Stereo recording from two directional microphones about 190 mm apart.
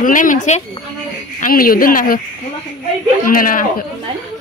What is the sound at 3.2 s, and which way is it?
Speech, 45° left (ahead or behind).